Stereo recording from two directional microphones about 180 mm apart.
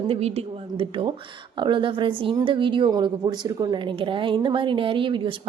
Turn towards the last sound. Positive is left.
turn(degrees=-25)  # may be behind; listen again after turning